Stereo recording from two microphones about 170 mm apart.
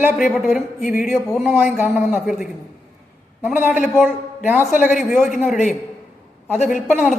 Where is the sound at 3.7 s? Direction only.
5° right (ahead or behind).